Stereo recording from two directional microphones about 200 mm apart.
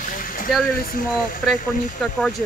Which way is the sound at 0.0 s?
45° left (ahead or behind).